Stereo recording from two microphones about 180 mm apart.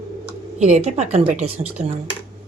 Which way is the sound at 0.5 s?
40° right (ahead or behind).